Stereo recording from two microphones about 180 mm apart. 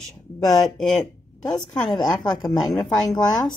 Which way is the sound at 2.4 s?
Centre (ahead or behind).